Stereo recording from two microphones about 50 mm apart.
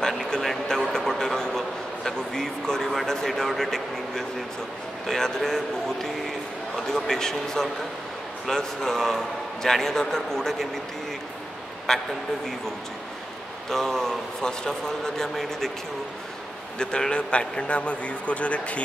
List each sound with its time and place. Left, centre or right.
0.0 s a sound: centre
5.0 s a man's voice: centre
6.9 s a man's voice: centre
11.9 s a man's voice: centre
13.7 s a man's voice: centre
16.7 s a man's voice: centre